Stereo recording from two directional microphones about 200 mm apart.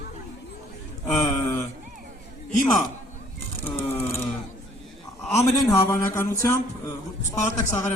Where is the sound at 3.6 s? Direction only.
15° left (ahead or behind).